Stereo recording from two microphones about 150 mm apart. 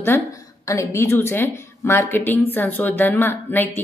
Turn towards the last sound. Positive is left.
turn(degrees=15)  # may be behind; listen again after turning